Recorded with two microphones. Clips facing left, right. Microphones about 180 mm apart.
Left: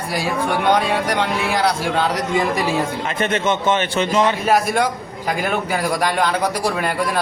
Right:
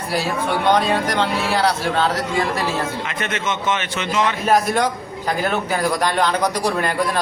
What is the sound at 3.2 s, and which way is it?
Speech, 30° left (ahead or behind).